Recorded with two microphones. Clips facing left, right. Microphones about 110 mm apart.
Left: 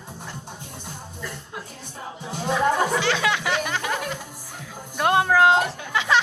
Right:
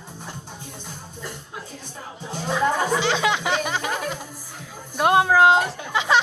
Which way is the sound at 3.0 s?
20° right (ahead or behind).